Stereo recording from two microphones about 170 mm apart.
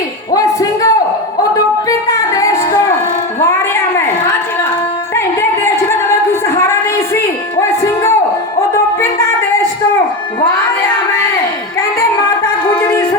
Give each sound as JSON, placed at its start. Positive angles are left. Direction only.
{"t": 0.3, "sound": "a sound", "side_deg": 20}
{"t": 1.5, "sound": "music", "side_deg": 20}
{"t": 5.1, "sound": "music", "side_deg": 15}